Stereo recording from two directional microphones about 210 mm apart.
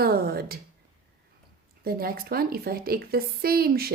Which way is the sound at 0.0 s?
45° right (ahead or behind).